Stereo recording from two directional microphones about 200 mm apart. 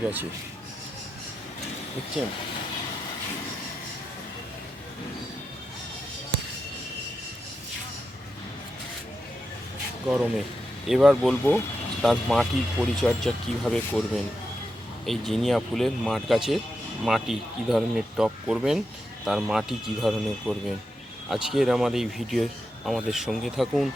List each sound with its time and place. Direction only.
10.1 s speech: 5° right (ahead or behind)
15.0 s speech: centre (ahead or behind)